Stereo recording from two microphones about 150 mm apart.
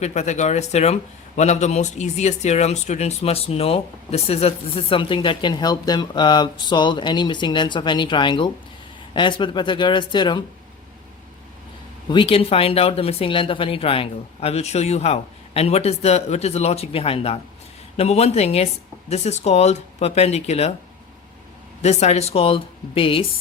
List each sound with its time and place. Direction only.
0.0 s a woman's voice: 50° left (ahead or behind); by 10.4 s 30° left (ahead or behind)
12.0 s a woman's voice: 35° left (ahead or behind)
21.8 s speech: 45° left (ahead or behind)